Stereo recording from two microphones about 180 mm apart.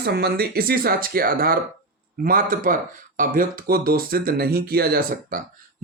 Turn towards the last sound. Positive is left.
turn(degrees=-55)  # may be behind; listen again after turning